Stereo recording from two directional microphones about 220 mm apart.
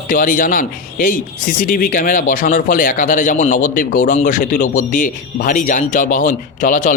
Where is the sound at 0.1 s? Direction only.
40° left (ahead or behind).